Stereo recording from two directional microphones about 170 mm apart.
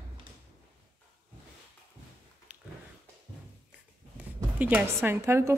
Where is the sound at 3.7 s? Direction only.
10° right (ahead or behind).